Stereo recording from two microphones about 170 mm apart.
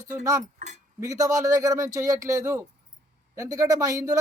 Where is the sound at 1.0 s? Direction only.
20° right (ahead or behind).